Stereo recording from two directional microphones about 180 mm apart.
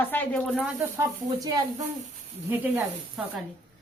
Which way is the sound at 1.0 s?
20° right (ahead or behind).